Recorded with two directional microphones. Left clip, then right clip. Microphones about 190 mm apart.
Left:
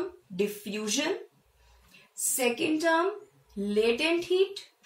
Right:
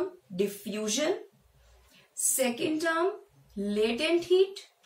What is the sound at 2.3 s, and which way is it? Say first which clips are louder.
A woman's voice: left 2 dB; 20° right (ahead or behind).